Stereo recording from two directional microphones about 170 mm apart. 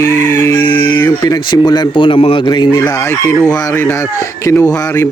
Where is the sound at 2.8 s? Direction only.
10° left (ahead or behind).